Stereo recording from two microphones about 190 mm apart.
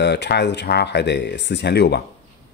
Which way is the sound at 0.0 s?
65° left (ahead or behind).